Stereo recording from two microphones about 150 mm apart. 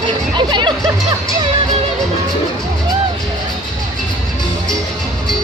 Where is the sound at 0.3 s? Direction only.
30° right (ahead or behind).